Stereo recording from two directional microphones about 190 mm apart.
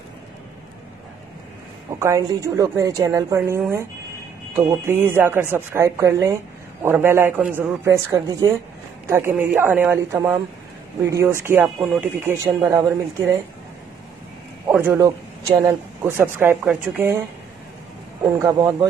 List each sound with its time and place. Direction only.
2.0 s speech: 15° right (ahead or behind)
14.7 s speech: 10° right (ahead or behind)
18.2 s speech: 15° right (ahead or behind)